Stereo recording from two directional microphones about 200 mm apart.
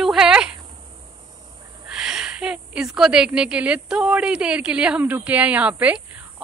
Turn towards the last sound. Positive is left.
turn(degrees=-5)  # may be behind; listen again after turning